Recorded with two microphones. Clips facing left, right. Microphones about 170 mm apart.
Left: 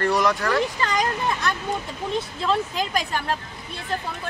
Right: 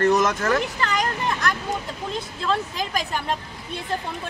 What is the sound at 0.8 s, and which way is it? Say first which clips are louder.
Speech: left 1 dB; 10° left (ahead or behind).